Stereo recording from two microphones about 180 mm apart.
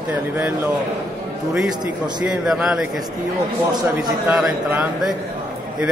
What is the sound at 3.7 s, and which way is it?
Speech, 25° right (ahead or behind).